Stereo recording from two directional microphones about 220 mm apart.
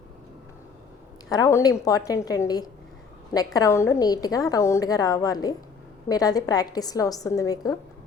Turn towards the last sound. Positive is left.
turn(degrees=15)  # may be behind; listen again after turning